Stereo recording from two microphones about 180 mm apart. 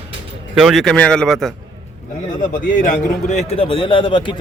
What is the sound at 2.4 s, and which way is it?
A man's voice, 45° left (ahead or behind).